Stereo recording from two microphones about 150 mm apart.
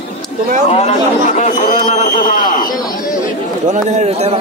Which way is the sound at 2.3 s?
65° left (ahead or behind).